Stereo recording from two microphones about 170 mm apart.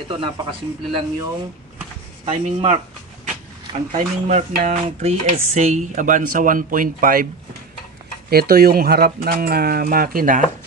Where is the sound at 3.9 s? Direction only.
40° right (ahead or behind).